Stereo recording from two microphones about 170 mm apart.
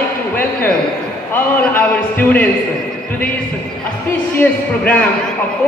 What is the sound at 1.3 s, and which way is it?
A man's voice, 10° left (ahead or behind).